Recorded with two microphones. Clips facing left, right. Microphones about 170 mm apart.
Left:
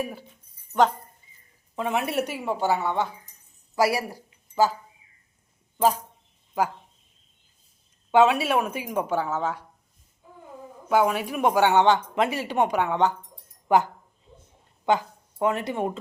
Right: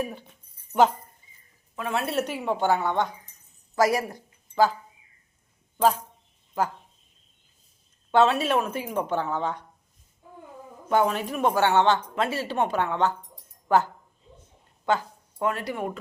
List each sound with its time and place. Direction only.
0.0 s speech: 5° left (ahead or behind)
0.7 s speech: 5° right (ahead or behind)
1.7 s speech: 20° left (ahead or behind)
6.6 s speech: 15° left (ahead or behind)
8.1 s speech: 10° left (ahead or behind)
10.8 s speech: 10° left (ahead or behind)